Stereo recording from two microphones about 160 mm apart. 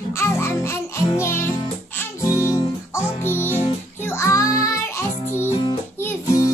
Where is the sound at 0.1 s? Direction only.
15° left (ahead or behind).